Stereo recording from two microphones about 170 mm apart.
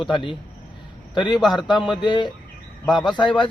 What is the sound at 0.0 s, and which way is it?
A man's voice, 30° left (ahead or behind).